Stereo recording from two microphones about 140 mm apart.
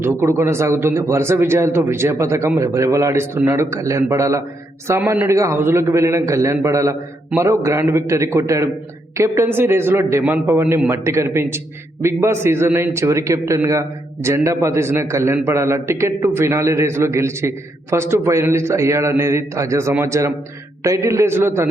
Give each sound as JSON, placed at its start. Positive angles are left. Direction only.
{"t": 0.0, "sound": "a man's voice", "side_deg": -15}